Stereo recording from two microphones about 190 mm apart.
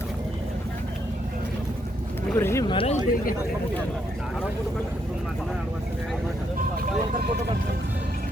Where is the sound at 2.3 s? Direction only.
15° left (ahead or behind).